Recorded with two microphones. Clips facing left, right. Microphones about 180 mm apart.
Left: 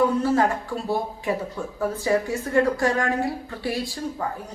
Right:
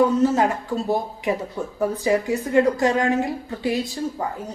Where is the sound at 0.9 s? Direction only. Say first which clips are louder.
Right 1 dB; 20° right (ahead or behind).